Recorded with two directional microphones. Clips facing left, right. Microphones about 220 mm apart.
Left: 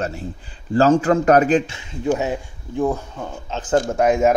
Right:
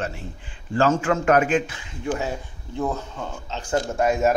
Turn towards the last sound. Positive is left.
turn(degrees=15)  # may be behind; listen again after turning